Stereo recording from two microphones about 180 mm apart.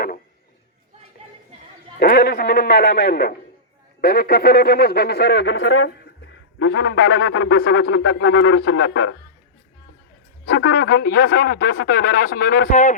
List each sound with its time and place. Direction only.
2.0 s speech: 55° left (ahead or behind); by 9.1 s 90° left
10.4 s speech: 65° left (ahead or behind); by 13.0 s 45° left (ahead or behind)